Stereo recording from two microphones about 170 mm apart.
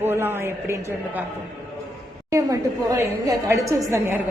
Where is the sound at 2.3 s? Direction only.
20° right (ahead or behind).